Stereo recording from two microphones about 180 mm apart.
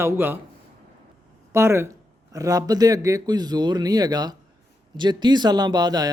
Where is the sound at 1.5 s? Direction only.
15° right (ahead or behind).